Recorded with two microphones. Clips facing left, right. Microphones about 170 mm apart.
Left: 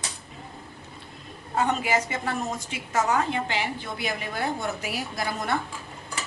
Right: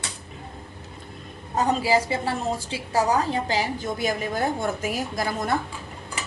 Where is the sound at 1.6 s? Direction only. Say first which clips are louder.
Right 3 dB; 35° right (ahead or behind).